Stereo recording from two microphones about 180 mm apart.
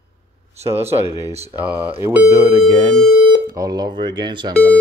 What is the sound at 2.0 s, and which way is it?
Speech, 15° right (ahead or behind).